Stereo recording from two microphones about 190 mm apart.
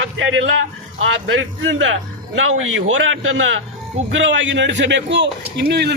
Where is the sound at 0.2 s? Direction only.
75° right (ahead or behind).